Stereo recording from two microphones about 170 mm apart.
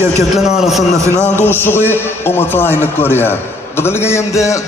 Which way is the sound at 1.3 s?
10° left (ahead or behind).